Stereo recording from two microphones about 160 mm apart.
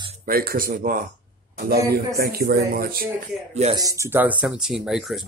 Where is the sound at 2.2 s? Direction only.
80° right.